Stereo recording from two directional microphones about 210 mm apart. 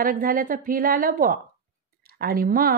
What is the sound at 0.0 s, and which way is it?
A woman's voice, 45° right (ahead or behind).